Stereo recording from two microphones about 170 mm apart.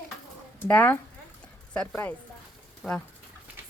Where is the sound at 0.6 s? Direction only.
10° left (ahead or behind).